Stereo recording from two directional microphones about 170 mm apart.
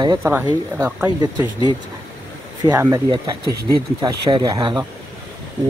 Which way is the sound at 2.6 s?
20° right (ahead or behind).